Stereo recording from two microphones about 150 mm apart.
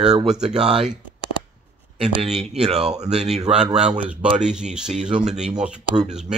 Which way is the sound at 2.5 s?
45° right (ahead or behind).